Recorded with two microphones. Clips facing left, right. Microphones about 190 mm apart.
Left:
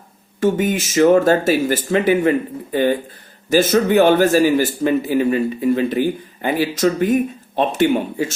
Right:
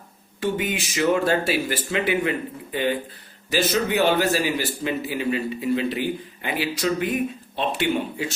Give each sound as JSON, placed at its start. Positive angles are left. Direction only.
{"t": 0.3, "sound": "a man's voice", "side_deg": 45}
{"t": 3.5, "sound": "a man's voice", "side_deg": 45}